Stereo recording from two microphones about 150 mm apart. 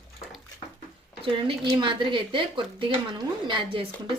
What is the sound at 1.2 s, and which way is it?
Speech, 35° right (ahead or behind).